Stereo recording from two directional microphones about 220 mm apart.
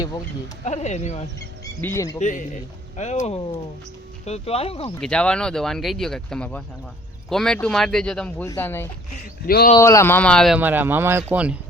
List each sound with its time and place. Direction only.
0.6 s speech: 30° left (ahead or behind)
1.8 s speech: 15° left (ahead or behind)
2.1 s speech: 35° left (ahead or behind)
4.9 s speech: 5° left (ahead or behind)
9.5 s speech: 45° left (ahead or behind)
9.7 s speech: 15° left (ahead or behind); by 11.5 s 5° right (ahead or behind)